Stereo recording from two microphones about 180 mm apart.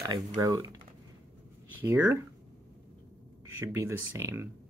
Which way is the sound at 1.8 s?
15° right (ahead or behind).